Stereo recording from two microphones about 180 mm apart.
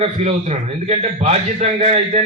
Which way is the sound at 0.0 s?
35° right (ahead or behind).